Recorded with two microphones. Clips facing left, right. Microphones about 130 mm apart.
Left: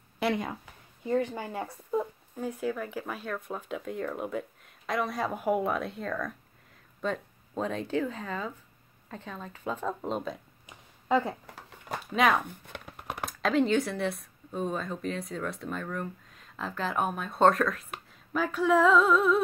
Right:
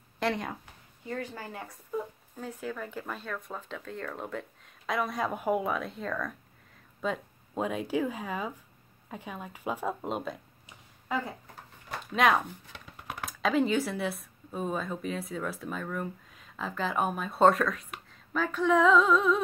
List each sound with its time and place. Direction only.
0.2 s speech: 10° left (ahead or behind)
1.0 s speech: 20° left (ahead or behind)
2.3 s speech: 10° left (ahead or behind); by 10.3 s 5° right (ahead or behind)
10.7 s a sound: 25° left (ahead or behind)
12.2 s speech: centre (ahead or behind)
12.7 s a sound: 60° left (ahead or behind)
13.2 s speech: centre (ahead or behind)